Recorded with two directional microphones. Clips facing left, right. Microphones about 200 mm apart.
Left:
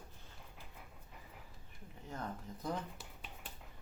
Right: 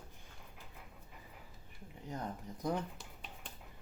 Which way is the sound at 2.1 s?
15° right (ahead or behind).